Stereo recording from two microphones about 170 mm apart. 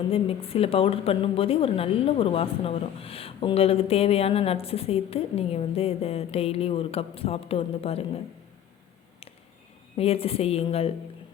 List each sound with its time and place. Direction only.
0.1 s a woman's voice: 35° left (ahead or behind)
9.9 s a woman's voice: 35° left (ahead or behind)